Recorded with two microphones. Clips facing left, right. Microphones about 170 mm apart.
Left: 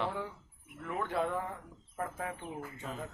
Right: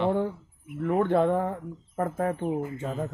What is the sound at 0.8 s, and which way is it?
Speech, 50° right (ahead or behind).